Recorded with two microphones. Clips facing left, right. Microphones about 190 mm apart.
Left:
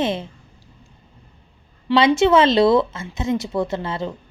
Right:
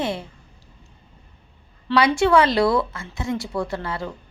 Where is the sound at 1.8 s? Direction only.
20° left (ahead or behind).